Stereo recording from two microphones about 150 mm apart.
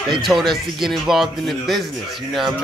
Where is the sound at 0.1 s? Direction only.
Centre (ahead or behind).